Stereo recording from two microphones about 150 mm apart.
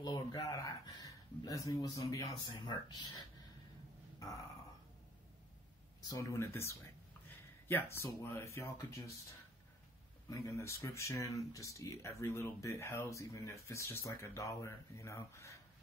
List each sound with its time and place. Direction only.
0.0 s speech: 25° left (ahead or behind)
6.0 s speech: 20° left (ahead or behind)
10.3 s speech: 20° left (ahead or behind)